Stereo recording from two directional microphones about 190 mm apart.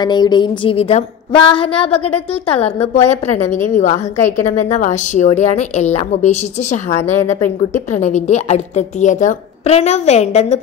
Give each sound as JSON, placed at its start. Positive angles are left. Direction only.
{"t": 0.0, "sound": "a woman's voice", "side_deg": 20}
{"t": 3.0, "sound": "a woman's voice", "side_deg": 10}
{"t": 4.5, "sound": "a woman's voice", "side_deg": 40}